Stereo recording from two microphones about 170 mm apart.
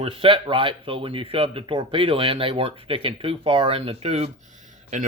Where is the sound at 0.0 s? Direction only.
35° right (ahead or behind).